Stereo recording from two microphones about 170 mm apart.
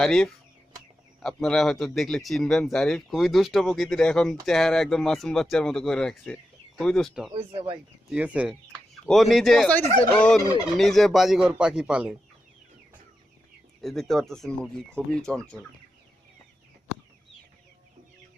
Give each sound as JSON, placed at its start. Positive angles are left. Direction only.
{"t": 0.0, "sound": "speech", "side_deg": 5}
{"t": 7.3, "sound": "speech", "side_deg": -30}
{"t": 8.1, "sound": "speech", "side_deg": -5}
{"t": 13.8, "sound": "speech", "side_deg": 0}